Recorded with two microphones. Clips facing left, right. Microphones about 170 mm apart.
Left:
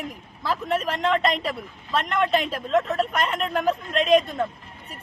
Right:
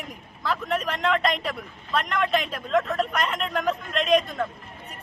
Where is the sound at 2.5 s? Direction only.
30° left (ahead or behind).